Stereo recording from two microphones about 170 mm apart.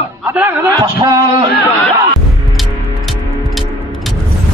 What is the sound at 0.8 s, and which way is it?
Speech, 25° right (ahead or behind).